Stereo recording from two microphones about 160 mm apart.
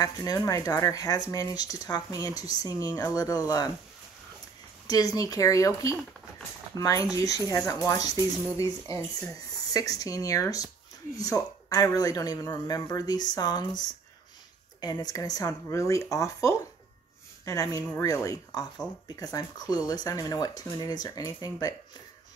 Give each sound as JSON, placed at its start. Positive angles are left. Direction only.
{"t": 0.0, "sound": "speech", "side_deg": 20}
{"t": 4.8, "sound": "speech", "side_deg": 20}